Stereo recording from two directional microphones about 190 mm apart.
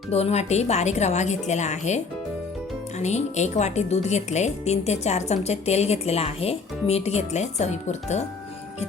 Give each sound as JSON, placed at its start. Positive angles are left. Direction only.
{"t": 0.1, "sound": "a woman's voice", "side_deg": 35}
{"t": 3.0, "sound": "a woman's voice", "side_deg": 35}